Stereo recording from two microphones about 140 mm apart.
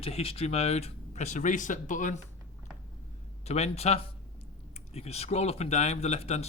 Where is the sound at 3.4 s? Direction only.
50° left (ahead or behind).